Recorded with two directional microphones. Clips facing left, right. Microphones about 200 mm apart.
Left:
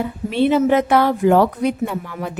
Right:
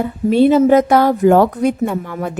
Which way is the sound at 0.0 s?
40° right (ahead or behind).